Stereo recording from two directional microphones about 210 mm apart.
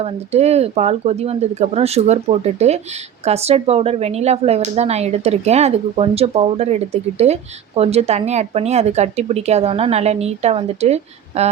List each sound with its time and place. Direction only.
0.0 s speech: 30° right (ahead or behind)